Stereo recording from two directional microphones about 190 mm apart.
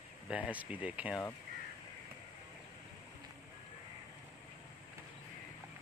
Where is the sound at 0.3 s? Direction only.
10° right (ahead or behind).